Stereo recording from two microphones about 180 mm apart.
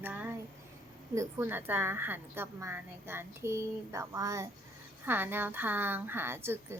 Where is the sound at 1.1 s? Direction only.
15° right (ahead or behind).